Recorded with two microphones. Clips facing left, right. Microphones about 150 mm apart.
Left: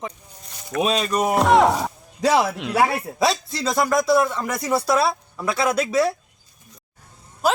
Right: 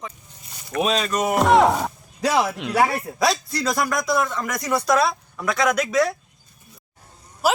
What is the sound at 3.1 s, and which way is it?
A man's voice, 25° left (ahead or behind).